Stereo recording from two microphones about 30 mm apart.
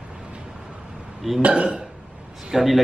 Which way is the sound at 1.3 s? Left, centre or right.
Centre.